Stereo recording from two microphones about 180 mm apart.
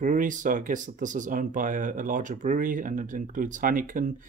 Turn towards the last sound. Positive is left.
turn(degrees=-45)  # may be behind; listen again after turning